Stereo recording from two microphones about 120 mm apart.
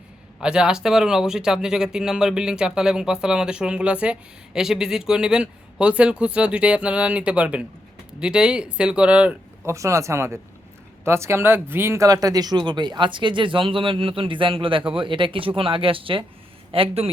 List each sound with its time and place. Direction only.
0.3 s speech: 5° right (ahead or behind)
9.6 s speech: 25° right (ahead or behind); by 17.1 s 50° right (ahead or behind)